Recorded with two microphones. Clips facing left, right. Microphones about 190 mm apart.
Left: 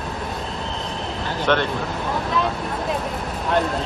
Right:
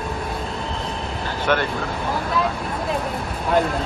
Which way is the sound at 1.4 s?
10° right (ahead or behind).